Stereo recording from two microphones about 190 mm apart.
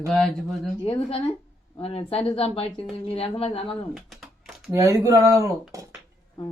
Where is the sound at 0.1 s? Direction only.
5° left (ahead or behind).